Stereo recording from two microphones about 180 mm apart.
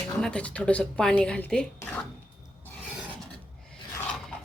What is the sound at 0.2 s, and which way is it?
Speech, 5° left (ahead or behind).